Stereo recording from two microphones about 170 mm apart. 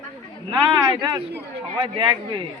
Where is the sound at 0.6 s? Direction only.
25° right (ahead or behind).